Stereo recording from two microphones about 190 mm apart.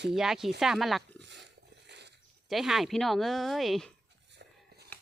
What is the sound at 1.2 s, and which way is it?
Dog, 65° right (ahead or behind).